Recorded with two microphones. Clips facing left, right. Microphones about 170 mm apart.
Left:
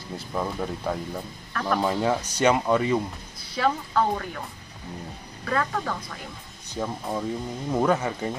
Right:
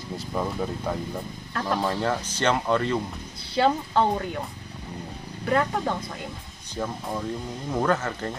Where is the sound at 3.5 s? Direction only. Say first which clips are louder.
Right 2 dB; 25° right (ahead or behind).